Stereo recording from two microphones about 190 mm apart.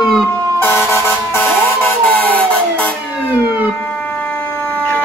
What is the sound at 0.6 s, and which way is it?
Air horn, 15° left (ahead or behind).